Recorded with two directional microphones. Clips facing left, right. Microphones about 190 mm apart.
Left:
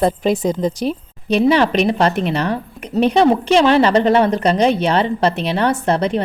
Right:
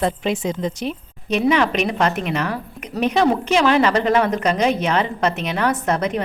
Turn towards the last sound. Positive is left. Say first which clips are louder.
# left 4 dB
turn(degrees=30)  # may be behind; listen again after turning